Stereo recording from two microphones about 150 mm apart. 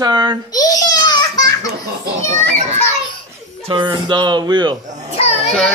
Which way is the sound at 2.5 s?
50° right (ahead or behind).